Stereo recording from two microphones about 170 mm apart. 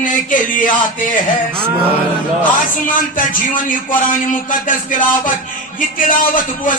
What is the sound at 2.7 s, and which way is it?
Speech, 50° left (ahead or behind).